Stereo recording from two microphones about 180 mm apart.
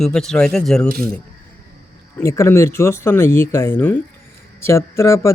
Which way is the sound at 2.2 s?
15° left (ahead or behind).